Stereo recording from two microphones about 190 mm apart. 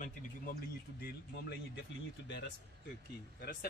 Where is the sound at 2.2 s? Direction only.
70° left (ahead or behind).